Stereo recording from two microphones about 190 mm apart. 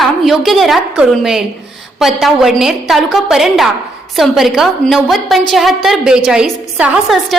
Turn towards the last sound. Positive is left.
turn(degrees=-5)  # may be behind; listen again after turning